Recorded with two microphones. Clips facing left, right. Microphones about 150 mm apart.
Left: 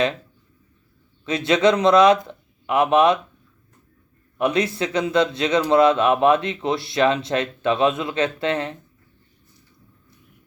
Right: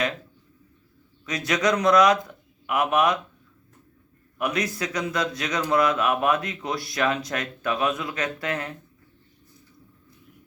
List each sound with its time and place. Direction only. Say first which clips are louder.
1.2 s speech: left 7 dB; 25° left (ahead or behind)
4.4 s speech: left 6 dB; 25° left (ahead or behind)